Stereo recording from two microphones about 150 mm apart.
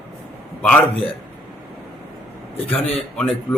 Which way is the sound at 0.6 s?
5° left (ahead or behind).